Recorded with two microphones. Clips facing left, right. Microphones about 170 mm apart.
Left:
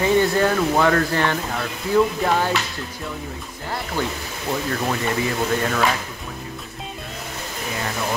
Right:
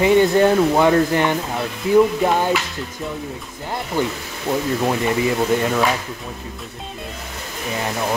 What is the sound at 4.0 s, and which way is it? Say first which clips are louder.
Speech: right 4 dB; 15° right (ahead or behind).